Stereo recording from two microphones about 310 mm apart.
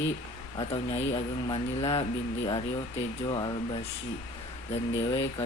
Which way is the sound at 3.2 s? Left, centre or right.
Centre.